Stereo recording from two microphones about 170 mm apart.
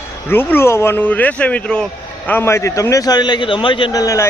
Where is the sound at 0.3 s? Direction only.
10° left (ahead or behind).